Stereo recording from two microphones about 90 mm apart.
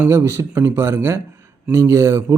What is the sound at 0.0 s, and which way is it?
A man's voice, 30° right (ahead or behind).